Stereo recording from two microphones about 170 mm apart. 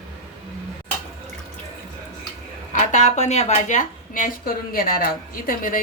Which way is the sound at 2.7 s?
45° left (ahead or behind).